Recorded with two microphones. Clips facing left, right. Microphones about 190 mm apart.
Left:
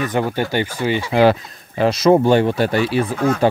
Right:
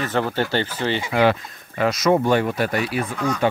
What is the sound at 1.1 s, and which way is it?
Speech, 30° left (ahead or behind).